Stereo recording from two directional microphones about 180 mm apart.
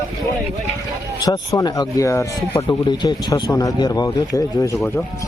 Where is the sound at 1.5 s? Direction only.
20° left (ahead or behind).